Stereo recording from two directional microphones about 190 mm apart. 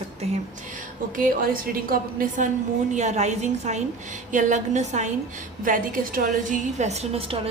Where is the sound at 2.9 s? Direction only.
40° right (ahead or behind).